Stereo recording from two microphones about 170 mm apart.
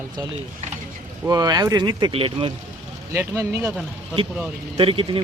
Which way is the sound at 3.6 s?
5° right (ahead or behind).